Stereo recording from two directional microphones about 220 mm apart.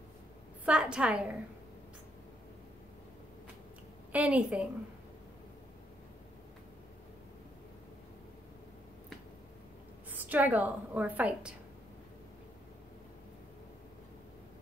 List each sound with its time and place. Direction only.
0.7 s a woman's voice: 5° right (ahead or behind)
4.1 s a woman's voice: 5° right (ahead or behind)
10.1 s a woman's voice: 5° right (ahead or behind)